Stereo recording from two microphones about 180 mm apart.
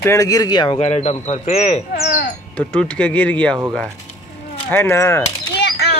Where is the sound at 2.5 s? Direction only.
5° left (ahead or behind).